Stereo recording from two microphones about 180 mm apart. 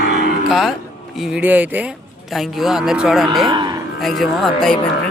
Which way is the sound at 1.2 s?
5° right (ahead or behind).